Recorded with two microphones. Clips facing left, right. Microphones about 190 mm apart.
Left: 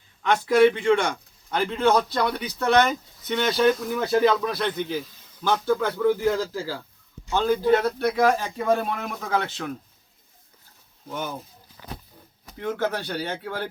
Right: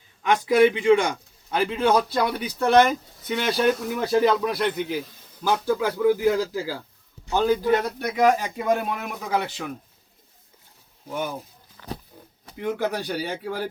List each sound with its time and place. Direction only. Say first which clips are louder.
0.2 s a man's voice: even; 10° right (ahead or behind)
11.1 s a man's voice: right 2 dB; 10° right (ahead or behind)
12.5 s a man's voice: right 1 dB; 10° right (ahead or behind)